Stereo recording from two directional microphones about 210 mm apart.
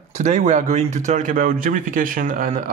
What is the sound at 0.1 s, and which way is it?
Speech, 35° right (ahead or behind).